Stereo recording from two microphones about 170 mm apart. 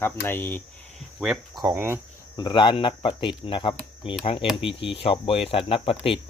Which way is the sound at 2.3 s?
25° left (ahead or behind).